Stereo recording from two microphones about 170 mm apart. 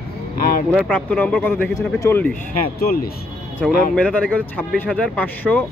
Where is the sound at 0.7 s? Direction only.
5° right (ahead or behind).